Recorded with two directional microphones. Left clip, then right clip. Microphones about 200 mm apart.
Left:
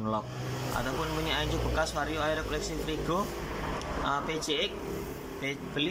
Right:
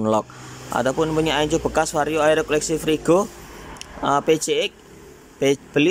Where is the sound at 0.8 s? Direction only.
45° right (ahead or behind).